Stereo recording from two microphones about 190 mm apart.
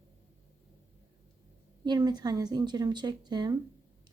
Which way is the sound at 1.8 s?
20° right (ahead or behind).